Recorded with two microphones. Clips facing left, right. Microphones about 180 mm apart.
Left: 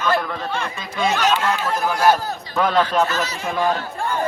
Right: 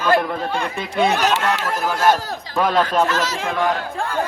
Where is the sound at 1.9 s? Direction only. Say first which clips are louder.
Even; 10° left (ahead or behind).